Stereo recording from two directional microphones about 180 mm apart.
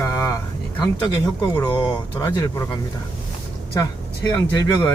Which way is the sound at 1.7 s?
25° left (ahead or behind).